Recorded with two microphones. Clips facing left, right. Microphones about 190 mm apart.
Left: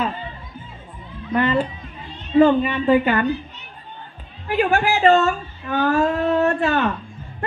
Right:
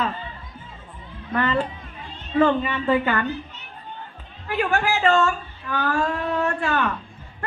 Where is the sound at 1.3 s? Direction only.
15° left (ahead or behind).